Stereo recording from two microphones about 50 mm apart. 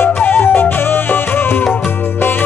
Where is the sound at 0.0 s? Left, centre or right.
Left.